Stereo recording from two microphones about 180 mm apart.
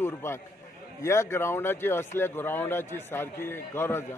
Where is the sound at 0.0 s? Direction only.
15° left (ahead or behind).